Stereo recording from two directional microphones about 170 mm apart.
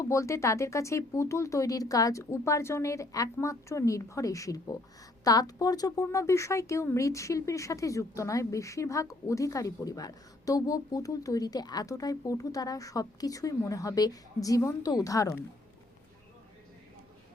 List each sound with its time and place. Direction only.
0.0 s speech: 20° left (ahead or behind)